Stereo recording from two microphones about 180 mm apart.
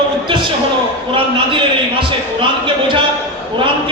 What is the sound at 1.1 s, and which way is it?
A man's voice, 30° right (ahead or behind).